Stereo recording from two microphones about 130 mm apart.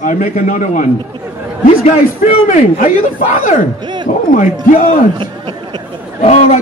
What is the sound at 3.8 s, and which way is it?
Speech, 35° right (ahead or behind).